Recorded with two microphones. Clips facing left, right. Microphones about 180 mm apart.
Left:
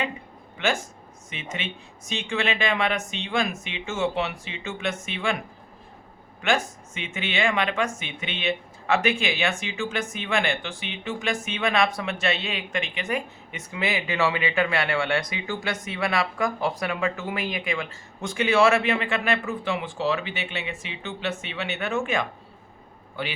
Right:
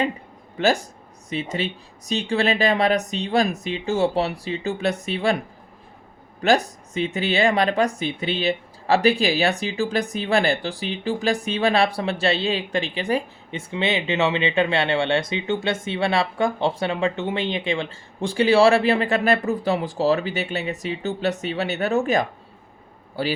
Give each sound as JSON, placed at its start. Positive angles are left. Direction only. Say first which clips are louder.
{"t": 0.5, "sound": "speech", "louder": "right 6 dB", "side_deg": -35}
{"t": 6.4, "sound": "speech", "louder": "right 6 dB", "side_deg": -35}